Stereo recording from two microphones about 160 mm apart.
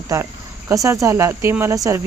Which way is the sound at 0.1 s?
20° right (ahead or behind).